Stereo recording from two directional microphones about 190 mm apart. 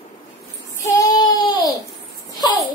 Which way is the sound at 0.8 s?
20° left (ahead or behind).